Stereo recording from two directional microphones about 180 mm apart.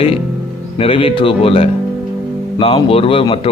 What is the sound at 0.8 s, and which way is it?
A man's voice, 30° left (ahead or behind).